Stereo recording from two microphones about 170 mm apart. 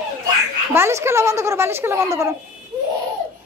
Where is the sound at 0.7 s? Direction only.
15° right (ahead or behind).